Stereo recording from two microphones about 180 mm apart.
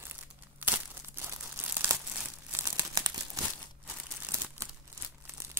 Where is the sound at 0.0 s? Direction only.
10° right (ahead or behind).